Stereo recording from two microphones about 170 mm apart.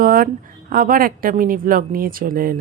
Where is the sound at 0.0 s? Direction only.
60° right (ahead or behind).